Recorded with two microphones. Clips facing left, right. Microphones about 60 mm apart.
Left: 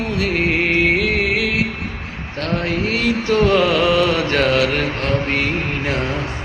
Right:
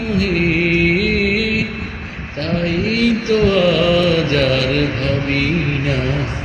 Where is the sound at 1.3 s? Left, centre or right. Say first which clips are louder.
Right 1 dB; left.